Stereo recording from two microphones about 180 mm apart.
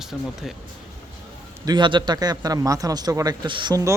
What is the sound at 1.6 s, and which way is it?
A man's voice, 25° right (ahead or behind).